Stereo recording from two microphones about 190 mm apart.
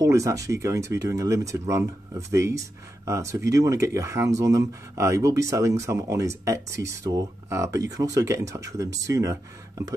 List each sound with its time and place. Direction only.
0.0 s speech: 15° right (ahead or behind)